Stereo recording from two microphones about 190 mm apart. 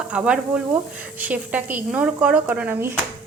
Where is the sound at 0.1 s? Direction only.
5° right (ahead or behind).